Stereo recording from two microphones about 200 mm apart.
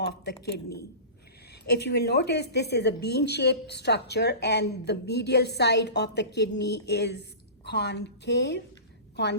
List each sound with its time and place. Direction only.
0.1 s a man's voice: 55° left (ahead or behind)